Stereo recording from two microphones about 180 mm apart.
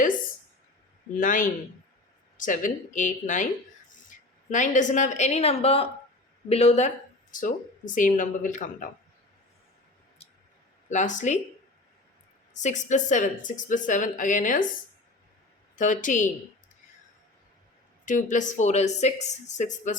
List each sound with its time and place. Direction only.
1.1 s speech: 50° left (ahead or behind)
10.2 s a sound: 35° left (ahead or behind)
10.8 s speech: 45° left (ahead or behind)
12.5 s speech: 40° left (ahead or behind)
15.7 s speech: 45° left (ahead or behind)
18.0 s speech: 45° left (ahead or behind)